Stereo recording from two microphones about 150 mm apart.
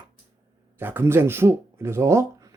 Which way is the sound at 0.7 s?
15° right (ahead or behind).